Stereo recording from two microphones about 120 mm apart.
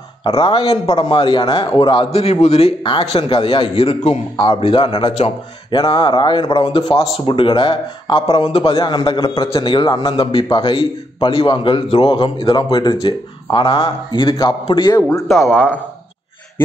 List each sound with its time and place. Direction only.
0.2 s a man's voice: 50° left (ahead or behind)
2.0 s a man's voice: 60° left (ahead or behind)
2.9 s a man's voice: 45° left (ahead or behind)
4.4 s a man's voice: 45° left (ahead or behind)
15.2 s speech: 5° right (ahead or behind)
15.5 s speech: 15° left (ahead or behind)